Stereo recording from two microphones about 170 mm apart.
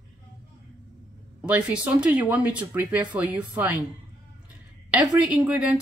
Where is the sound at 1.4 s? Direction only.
10° right (ahead or behind).